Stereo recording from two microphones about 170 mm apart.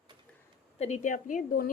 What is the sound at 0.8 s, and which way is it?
Speech, 45° left (ahead or behind).